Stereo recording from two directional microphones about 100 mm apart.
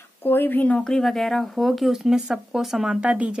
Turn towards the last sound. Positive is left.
turn(degrees=-10)  # may be behind; listen again after turning